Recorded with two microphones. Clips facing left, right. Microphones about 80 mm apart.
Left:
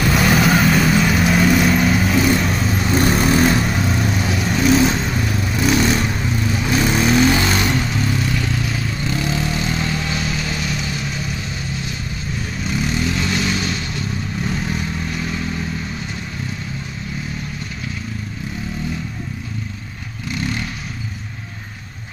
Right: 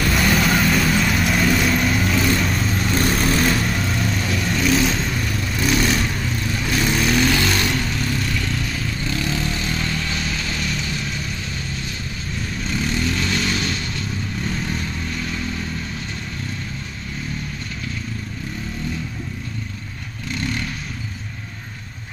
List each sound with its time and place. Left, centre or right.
0.0 s vehicle: centre
12.6 s vehicle: centre